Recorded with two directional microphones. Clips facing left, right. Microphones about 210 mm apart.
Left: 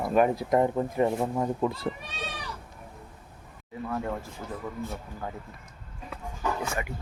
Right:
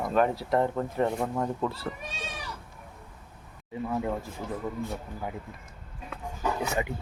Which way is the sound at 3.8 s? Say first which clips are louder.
Right 2 dB; 15° right (ahead or behind).